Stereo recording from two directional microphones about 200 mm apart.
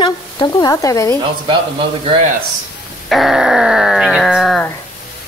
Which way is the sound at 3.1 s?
Centre (ahead or behind).